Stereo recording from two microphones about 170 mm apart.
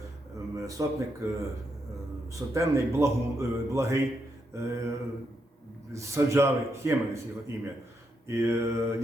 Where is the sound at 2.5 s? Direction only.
15° right (ahead or behind).